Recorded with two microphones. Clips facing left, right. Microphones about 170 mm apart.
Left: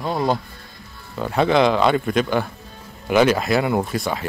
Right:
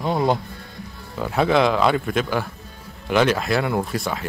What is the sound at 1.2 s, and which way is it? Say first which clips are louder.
Speech: left 1 dB; 5° right (ahead or behind).